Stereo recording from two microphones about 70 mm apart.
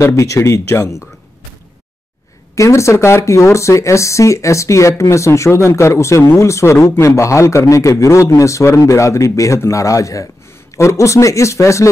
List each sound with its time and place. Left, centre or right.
0.0 s speech: left
2.5 s speech: left